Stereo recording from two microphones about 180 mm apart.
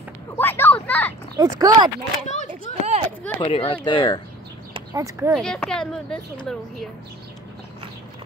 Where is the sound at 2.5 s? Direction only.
35° right (ahead or behind).